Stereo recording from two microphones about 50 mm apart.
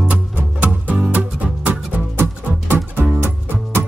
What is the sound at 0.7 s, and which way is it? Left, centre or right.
Music, right.